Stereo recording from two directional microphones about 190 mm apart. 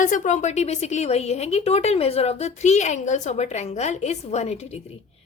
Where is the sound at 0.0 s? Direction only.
40° left (ahead or behind).